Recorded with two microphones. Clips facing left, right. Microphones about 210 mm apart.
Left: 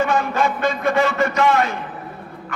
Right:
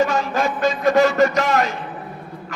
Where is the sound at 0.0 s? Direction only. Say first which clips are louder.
Even; 55° left (ahead or behind).